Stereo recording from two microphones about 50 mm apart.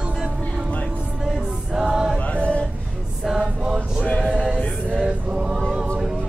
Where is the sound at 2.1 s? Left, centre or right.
Left.